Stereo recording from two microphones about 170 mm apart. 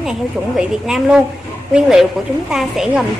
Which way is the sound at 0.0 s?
5° right (ahead or behind).